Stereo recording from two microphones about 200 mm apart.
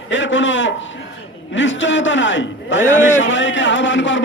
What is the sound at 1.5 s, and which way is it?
A man's voice, 65° left (ahead or behind).